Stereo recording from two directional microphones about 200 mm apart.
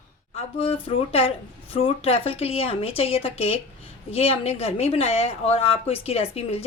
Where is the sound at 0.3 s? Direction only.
30° left (ahead or behind).